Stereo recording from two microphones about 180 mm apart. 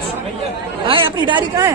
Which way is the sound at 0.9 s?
25° right (ahead or behind).